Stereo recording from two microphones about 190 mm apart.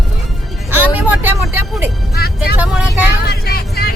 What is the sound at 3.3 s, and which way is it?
Vehicle, 55° left (ahead or behind).